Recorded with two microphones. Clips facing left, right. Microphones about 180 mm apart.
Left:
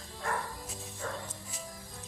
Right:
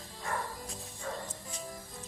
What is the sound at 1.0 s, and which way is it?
Music, 55° left (ahead or behind).